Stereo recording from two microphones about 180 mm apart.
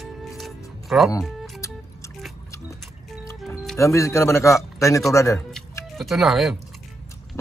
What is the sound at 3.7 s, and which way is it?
Speech, 15° left (ahead or behind).